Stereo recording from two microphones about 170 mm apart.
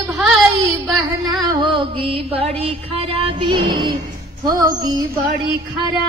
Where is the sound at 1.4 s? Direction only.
30° right (ahead or behind).